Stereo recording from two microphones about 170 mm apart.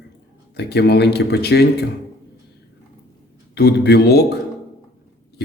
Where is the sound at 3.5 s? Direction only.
70° left (ahead or behind).